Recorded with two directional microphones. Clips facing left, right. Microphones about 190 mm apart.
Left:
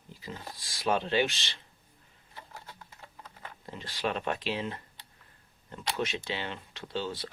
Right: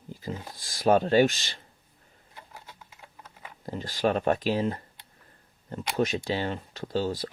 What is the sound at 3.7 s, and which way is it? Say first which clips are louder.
Speech: right 7 dB; 40° right (ahead or behind).